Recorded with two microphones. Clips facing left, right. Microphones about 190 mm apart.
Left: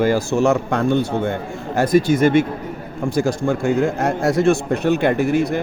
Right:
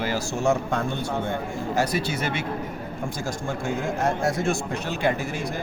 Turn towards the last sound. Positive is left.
turn(degrees=65)  # may be behind; listen again after turning